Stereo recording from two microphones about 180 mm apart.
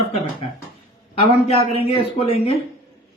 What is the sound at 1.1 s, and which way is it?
Speech, 35° left (ahead or behind).